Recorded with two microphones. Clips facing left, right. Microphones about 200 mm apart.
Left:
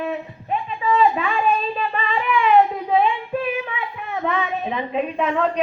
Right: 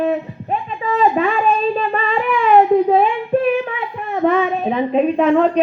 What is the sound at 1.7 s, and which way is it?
Child singing, 45° right (ahead or behind).